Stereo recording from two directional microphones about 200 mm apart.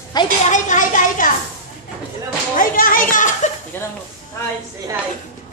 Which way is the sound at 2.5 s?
45° left (ahead or behind).